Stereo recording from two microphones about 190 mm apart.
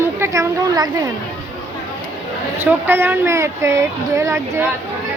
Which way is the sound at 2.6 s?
10° right (ahead or behind).